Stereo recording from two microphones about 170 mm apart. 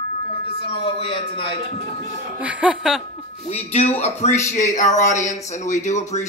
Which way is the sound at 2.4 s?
5° right (ahead or behind).